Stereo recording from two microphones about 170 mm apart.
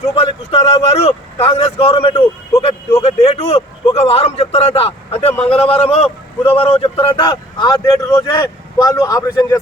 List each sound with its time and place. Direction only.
0.2 s a man's voice: 35° left (ahead or behind)
2.6 s vehicle: 35° left (ahead or behind)
3.9 s a sound: 35° left (ahead or behind)
5.5 s vehicle: 35° left (ahead or behind); by 9.6 s 20° left (ahead or behind)